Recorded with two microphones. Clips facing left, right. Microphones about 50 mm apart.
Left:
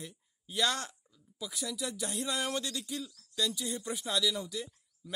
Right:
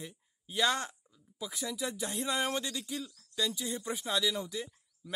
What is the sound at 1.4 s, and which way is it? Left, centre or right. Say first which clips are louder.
Speech: right 1 dB; right.